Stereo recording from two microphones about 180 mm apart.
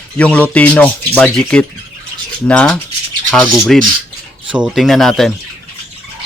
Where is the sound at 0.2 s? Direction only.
5° left (ahead or behind).